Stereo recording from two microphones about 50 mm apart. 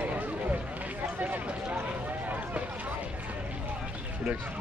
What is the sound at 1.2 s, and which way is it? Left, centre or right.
Run, right.